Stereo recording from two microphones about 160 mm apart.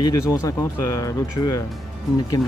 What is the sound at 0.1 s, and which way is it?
Speech, 20° left (ahead or behind).